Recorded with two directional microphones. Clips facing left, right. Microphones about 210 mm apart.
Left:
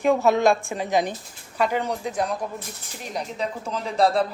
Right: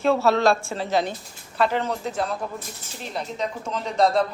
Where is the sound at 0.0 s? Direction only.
15° left (ahead or behind).